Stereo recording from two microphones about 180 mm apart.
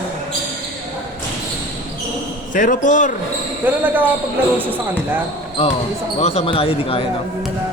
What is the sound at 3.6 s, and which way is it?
Speech, 10° right (ahead or behind).